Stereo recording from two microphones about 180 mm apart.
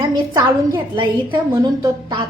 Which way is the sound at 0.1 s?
25° right (ahead or behind).